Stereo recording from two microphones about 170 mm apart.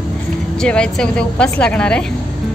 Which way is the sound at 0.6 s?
5° left (ahead or behind).